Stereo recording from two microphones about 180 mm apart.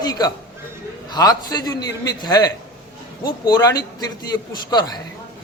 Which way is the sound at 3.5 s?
20° left (ahead or behind).